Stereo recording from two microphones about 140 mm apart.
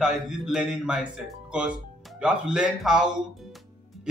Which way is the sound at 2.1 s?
5° right (ahead or behind).